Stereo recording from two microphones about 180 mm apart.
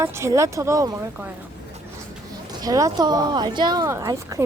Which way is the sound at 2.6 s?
20° right (ahead or behind).